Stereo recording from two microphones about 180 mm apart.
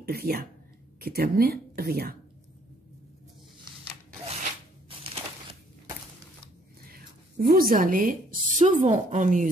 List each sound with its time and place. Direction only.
0.0 s a woman's voice: 55° right (ahead or behind)
4.8 s crushing: 30° right (ahead or behind)
6.9 s a woman's voice: 55° right (ahead or behind)